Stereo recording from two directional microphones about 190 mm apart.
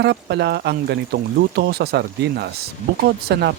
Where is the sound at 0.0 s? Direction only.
65° right (ahead or behind).